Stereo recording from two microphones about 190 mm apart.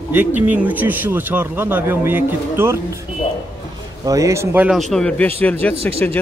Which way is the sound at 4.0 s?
15° right (ahead or behind).